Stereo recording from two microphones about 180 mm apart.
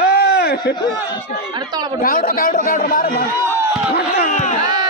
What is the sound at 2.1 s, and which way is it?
Speech, 50° left (ahead or behind).